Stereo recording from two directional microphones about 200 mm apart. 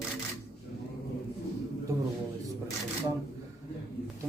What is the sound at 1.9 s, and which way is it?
Speech, 15° right (ahead or behind).